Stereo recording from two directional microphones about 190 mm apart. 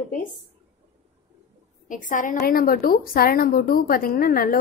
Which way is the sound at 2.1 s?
45° left (ahead or behind).